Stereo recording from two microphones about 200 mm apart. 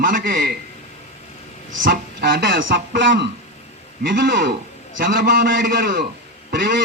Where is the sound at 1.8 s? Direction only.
45° right (ahead or behind).